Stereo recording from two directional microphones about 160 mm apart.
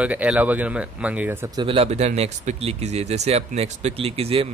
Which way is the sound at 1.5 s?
35° right (ahead or behind).